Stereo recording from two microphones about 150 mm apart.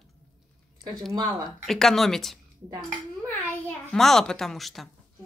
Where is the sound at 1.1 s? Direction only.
30° right (ahead or behind).